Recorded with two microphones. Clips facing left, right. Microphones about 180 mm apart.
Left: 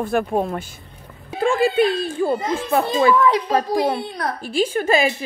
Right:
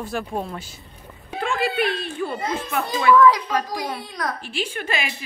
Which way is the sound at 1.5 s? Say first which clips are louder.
Left 5 dB; 30° left (ahead or behind).